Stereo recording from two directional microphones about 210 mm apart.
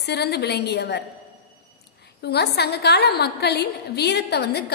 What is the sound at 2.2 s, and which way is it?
A woman's voice, 50° left (ahead or behind).